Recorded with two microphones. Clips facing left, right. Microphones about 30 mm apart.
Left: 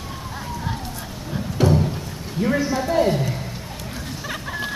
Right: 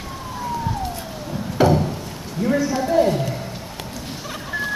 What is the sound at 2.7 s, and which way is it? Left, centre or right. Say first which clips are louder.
Speech: right 1 dB; centre.